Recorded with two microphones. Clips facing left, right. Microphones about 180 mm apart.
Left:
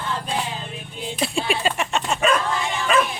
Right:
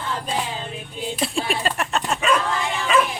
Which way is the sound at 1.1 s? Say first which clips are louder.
Left 2 dB; centre (ahead or behind).